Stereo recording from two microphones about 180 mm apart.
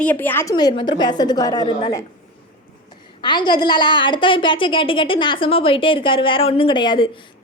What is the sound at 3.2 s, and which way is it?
A woman's voice, 25° left (ahead or behind).